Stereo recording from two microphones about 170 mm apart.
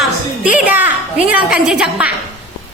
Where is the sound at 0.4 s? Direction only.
5° right (ahead or behind).